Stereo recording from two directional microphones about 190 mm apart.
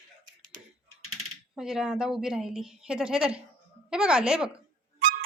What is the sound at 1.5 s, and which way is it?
A woman's voice, centre (ahead or behind).